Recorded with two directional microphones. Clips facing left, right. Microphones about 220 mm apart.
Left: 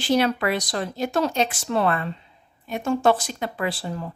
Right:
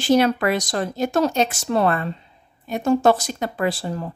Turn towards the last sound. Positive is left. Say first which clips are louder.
# right 4 dB
turn(degrees=-45)  # may be behind; listen again after turning